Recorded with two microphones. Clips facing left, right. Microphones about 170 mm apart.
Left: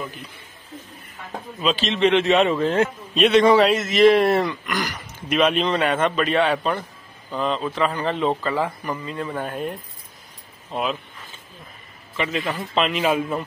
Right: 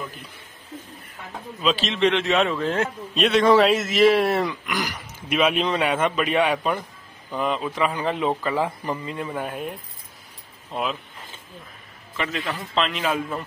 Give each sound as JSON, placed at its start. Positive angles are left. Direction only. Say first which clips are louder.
{"t": 1.6, "sound": "a man's voice", "louder": "left 1 dB", "side_deg": 0}
{"t": 8.6, "sound": "speech", "louder": "even", "side_deg": -20}
{"t": 9.3, "sound": "speech", "louder": "left 2 dB", "side_deg": -5}
{"t": 12.2, "sound": "a man's voice", "louder": "left 3 dB", "side_deg": 0}